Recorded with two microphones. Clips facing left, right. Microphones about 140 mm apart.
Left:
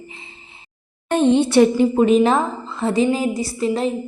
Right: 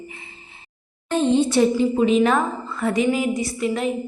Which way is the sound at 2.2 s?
30° left (ahead or behind).